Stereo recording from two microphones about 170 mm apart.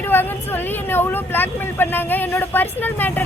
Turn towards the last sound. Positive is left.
turn(degrees=10)  # may be behind; listen again after turning